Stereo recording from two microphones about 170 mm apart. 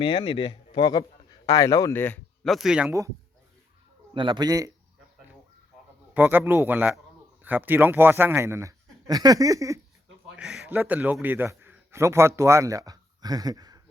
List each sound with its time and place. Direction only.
0.0 s speech: 30° left (ahead or behind); by 2.9 s 5° right (ahead or behind)
4.1 s a man's voice: 30° right (ahead or behind)
6.1 s a man's voice: 10° right (ahead or behind)
10.3 s a man's voice: centre (ahead or behind); by 13.8 s 20° right (ahead or behind)